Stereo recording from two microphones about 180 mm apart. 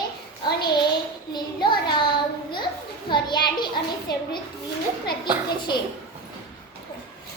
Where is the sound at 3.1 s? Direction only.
25° left (ahead or behind).